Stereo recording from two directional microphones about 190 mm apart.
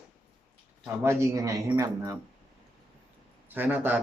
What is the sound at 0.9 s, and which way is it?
Speech, 15° right (ahead or behind).